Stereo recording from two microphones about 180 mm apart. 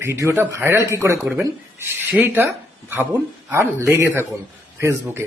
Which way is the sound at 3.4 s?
15° right (ahead or behind).